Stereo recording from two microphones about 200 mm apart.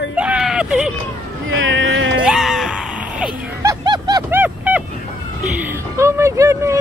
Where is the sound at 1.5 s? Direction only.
75° right (ahead or behind).